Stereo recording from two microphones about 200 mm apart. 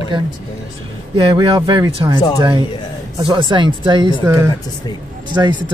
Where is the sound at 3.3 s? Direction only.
25° right (ahead or behind).